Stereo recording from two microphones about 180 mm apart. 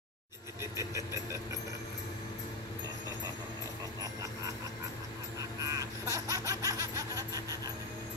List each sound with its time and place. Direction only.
0.6 s vehicle: 15° right (ahead or behind)
5.6 s laughter: 20° right (ahead or behind)